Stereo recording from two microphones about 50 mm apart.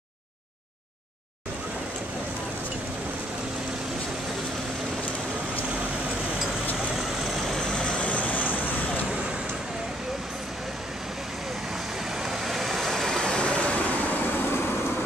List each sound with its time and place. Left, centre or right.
7.0 s vehicle: centre
7.6 s vehicle: centre; by 9.0 s left
12.2 s vehicle: centre
13.2 s vehicle: centre
14.5 s vehicle: left